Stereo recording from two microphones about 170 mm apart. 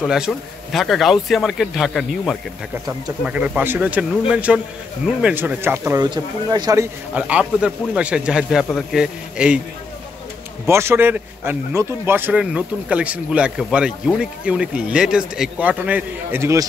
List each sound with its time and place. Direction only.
0.0 s a man's voice: centre (ahead or behind)
6.0 s speech: 25° right (ahead or behind)
7.2 s a man's voice: 5° right (ahead or behind)
10.7 s a man's voice: 15° right (ahead or behind)